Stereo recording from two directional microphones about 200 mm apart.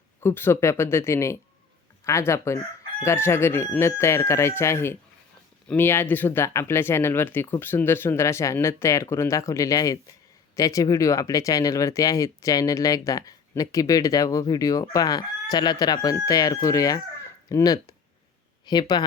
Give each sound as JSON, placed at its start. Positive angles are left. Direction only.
{"t": 0.2, "sound": "speech", "side_deg": 10}